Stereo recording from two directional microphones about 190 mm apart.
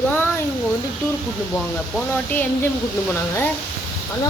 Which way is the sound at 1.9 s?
10° left (ahead or behind).